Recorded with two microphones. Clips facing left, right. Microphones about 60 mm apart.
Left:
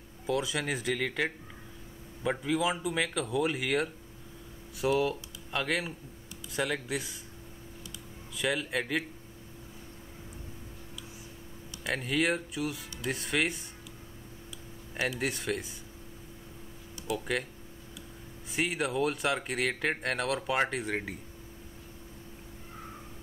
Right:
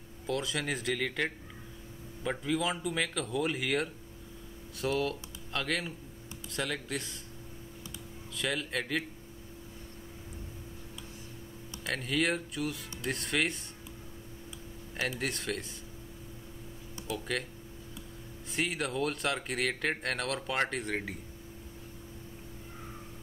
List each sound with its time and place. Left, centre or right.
0.3 s speech: centre
8.4 s speech: centre
11.8 s speech: centre
15.0 s speech: centre
17.2 s speech: centre
18.5 s speech: centre